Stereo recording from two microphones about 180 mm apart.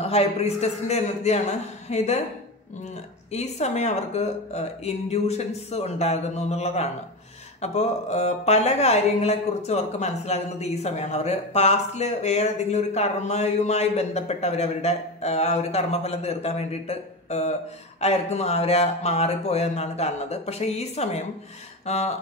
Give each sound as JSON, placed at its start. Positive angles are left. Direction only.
{"t": 0.0, "sound": "speech", "side_deg": 35}
{"t": 3.3, "sound": "speech", "side_deg": 40}